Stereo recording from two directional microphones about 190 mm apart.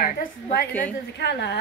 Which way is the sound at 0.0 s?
50° left (ahead or behind).